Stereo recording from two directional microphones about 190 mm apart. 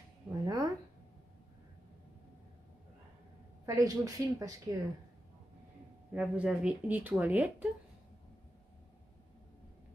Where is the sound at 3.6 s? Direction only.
20° right (ahead or behind).